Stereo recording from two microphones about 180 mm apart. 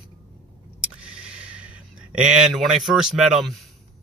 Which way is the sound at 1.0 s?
5° right (ahead or behind).